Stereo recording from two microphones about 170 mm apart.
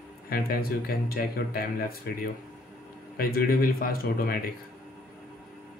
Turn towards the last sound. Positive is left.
turn(degrees=60)  # may be behind; listen again after turning